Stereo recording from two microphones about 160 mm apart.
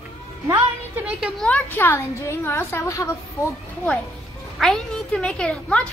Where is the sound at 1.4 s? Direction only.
10° left (ahead or behind).